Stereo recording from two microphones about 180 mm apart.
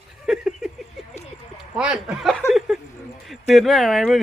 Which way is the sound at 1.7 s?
5° right (ahead or behind).